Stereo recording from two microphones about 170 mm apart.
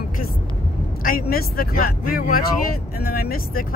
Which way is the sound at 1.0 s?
60° left (ahead or behind).